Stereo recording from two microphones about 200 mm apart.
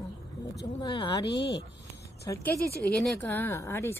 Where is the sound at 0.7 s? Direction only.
25° left (ahead or behind).